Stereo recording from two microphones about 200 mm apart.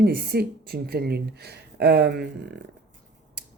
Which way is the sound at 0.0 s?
55° right (ahead or behind).